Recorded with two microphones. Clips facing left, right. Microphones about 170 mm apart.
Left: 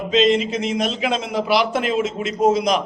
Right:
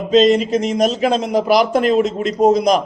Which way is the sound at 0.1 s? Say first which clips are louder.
Right 5 dB; 40° right (ahead or behind).